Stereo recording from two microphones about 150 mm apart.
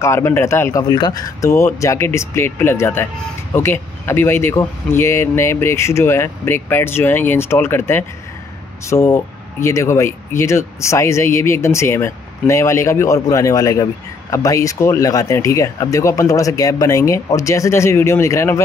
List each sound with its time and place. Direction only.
0.0 s speech: 20° left (ahead or behind)
0.8 s speech: 30° left (ahead or behind)